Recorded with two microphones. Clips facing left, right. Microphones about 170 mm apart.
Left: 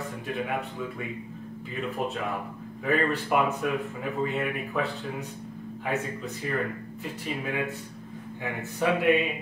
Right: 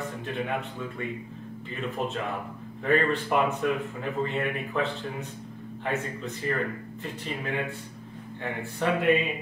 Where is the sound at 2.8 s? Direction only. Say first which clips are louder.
Right 2 dB; 5° left (ahead or behind).